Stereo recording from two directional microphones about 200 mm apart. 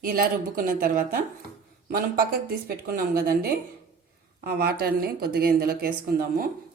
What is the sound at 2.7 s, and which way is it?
Speech, 45° right (ahead or behind).